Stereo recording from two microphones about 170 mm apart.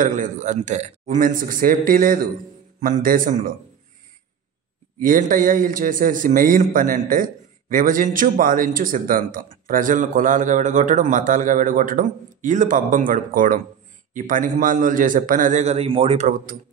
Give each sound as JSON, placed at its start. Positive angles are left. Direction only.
{"t": 0.0, "sound": "speech", "side_deg": -45}
{"t": 5.0, "sound": "speech", "side_deg": -55}